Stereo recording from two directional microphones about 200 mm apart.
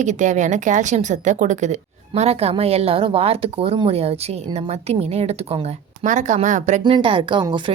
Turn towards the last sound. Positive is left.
turn(degrees=-25)  # may be behind; listen again after turning